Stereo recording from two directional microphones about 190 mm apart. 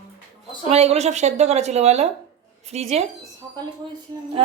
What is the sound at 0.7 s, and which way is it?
A woman's voice, 35° right (ahead or behind).